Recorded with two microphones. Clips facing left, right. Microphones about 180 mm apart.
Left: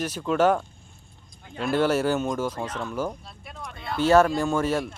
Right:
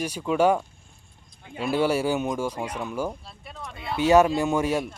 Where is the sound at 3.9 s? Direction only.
15° right (ahead or behind).